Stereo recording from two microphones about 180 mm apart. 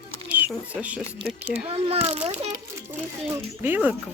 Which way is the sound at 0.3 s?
10° right (ahead or behind).